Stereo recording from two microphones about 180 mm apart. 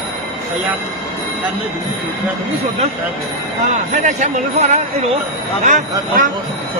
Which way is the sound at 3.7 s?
40° right (ahead or behind).